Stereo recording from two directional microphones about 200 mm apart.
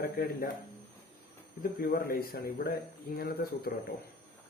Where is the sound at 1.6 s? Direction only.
45° left (ahead or behind).